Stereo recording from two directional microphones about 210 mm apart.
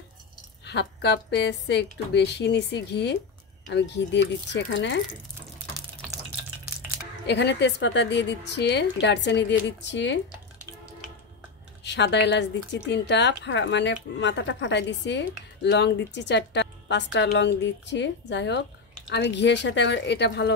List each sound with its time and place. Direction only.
0.7 s a woman's voice: 55° left (ahead or behind)
7.2 s a woman's voice: 55° left (ahead or behind)
11.8 s a woman's voice: 55° left (ahead or behind)